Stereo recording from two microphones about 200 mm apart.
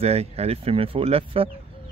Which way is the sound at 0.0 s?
30° right (ahead or behind).